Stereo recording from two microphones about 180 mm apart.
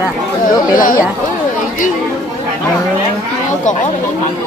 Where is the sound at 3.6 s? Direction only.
45° left (ahead or behind).